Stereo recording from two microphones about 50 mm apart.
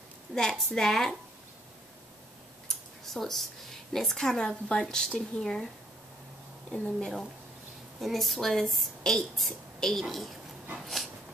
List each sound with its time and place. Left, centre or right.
0.3 s speech: centre
2.7 s tick-tock: centre
3.9 s speech: centre
6.7 s speech: centre
8.0 s speech: centre